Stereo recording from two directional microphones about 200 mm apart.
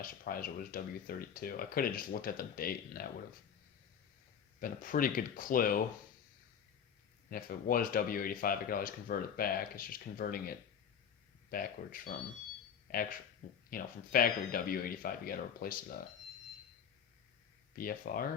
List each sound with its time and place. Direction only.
0.0 s speech: 45° left (ahead or behind)
4.6 s speech: 40° left (ahead or behind)
7.3 s speech: 45° left (ahead or behind)
11.5 s speech: 45° left (ahead or behind)
17.7 s speech: 45° left (ahead or behind)